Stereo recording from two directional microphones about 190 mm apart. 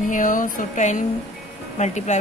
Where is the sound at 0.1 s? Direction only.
45° left (ahead or behind).